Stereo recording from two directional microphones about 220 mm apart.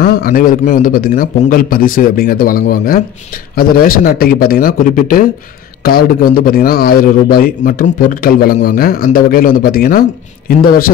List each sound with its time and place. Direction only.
0.0 s a man's voice: 40° left (ahead or behind)